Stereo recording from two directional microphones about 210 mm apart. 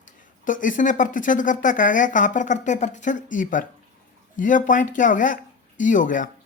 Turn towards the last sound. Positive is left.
turn(degrees=40)  # may be behind; listen again after turning